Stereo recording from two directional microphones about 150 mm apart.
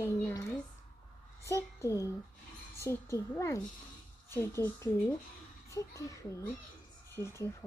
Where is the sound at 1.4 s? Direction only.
20° left (ahead or behind).